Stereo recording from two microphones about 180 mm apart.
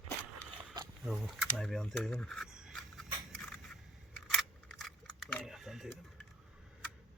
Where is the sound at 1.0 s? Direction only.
Centre (ahead or behind).